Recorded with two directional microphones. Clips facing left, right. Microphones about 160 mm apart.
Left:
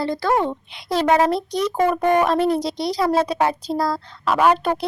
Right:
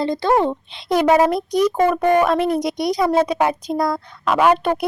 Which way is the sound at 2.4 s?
30° left (ahead or behind).